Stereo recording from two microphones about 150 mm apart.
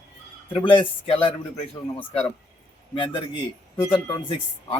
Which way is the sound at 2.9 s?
35° left (ahead or behind).